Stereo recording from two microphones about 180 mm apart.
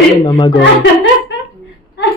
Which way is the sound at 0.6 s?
90° left.